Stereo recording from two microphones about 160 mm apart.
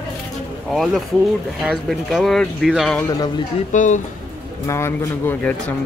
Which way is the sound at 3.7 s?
50° left (ahead or behind).